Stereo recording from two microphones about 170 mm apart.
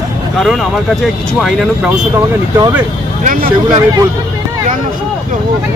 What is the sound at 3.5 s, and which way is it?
Speech, 25° right (ahead or behind).